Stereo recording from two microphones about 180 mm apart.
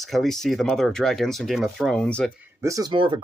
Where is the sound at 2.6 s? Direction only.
20° right (ahead or behind).